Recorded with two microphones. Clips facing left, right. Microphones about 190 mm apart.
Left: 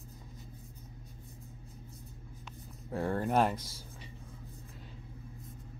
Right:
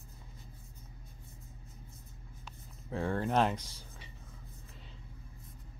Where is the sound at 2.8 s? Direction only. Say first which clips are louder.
Left 1 dB; 5° left (ahead or behind).